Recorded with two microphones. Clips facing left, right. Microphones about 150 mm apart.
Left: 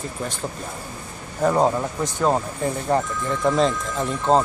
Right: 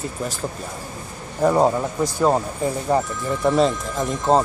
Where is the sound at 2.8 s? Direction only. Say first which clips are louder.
Right 1 dB; 10° right (ahead or behind).